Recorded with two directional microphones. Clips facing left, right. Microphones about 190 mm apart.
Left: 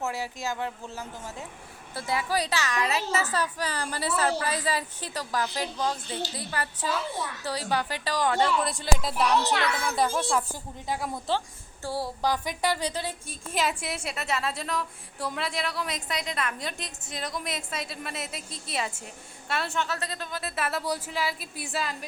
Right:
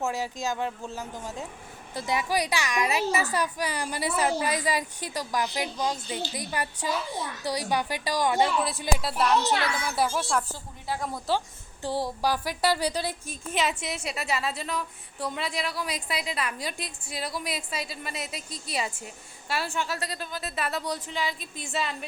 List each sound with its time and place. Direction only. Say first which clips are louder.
0.0 s a woman's voice: right 2 dB; 15° right (ahead or behind)
11.3 s a woman's voice: right 3 dB; 15° right (ahead or behind)
13.5 s a woman's voice: even; centre (ahead or behind)